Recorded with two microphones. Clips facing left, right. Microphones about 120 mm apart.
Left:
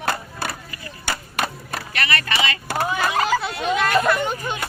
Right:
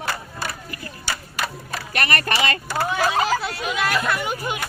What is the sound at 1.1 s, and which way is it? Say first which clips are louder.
Chop: left 2 dB; 55° left (ahead or behind).